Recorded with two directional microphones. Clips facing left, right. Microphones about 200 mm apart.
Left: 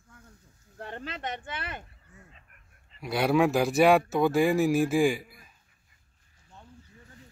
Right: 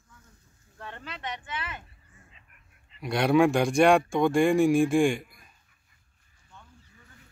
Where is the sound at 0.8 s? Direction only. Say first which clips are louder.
Left 4 dB; 45° left (ahead or behind).